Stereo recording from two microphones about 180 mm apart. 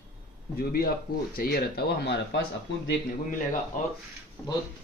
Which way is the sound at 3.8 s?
45° left (ahead or behind).